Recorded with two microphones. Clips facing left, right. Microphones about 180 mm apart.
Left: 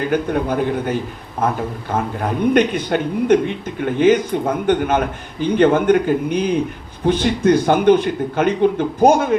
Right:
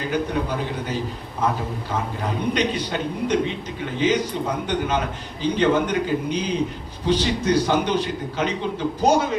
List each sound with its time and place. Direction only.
0.1 s speech: 55° left (ahead or behind)
2.5 s speech: 55° left (ahead or behind)